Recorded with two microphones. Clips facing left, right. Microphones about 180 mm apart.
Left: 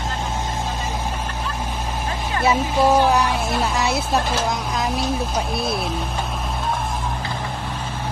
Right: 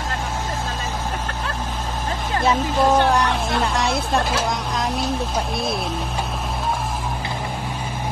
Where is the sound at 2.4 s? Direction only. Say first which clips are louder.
Left 1 dB; 10° left (ahead or behind).